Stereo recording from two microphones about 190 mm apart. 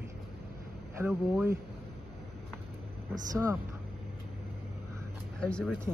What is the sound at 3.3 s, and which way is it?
Speech, 20° right (ahead or behind).